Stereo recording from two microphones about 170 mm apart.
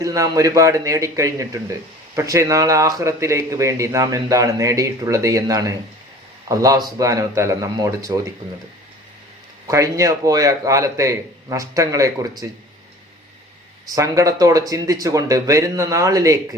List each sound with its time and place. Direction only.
0.0 s speech: 20° right (ahead or behind)
9.6 s speech: 20° right (ahead or behind)
13.9 s speech: 20° right (ahead or behind)